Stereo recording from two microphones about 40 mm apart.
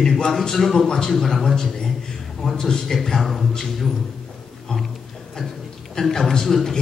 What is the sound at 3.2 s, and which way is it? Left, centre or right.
Speech, centre.